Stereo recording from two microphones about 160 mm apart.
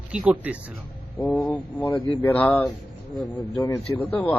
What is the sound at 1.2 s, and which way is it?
A man's voice, 10° left (ahead or behind).